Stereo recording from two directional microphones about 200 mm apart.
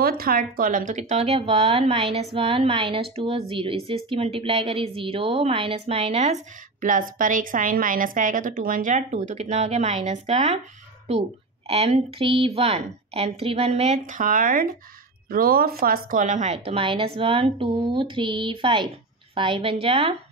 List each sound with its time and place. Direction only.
0.0 s a woman's voice: 50° right (ahead or behind); by 20.2 s 30° right (ahead or behind)